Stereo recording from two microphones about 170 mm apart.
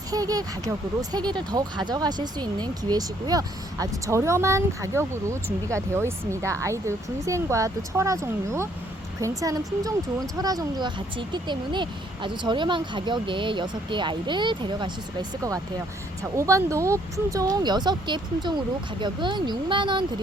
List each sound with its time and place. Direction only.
0.1 s speech: 20° right (ahead or behind)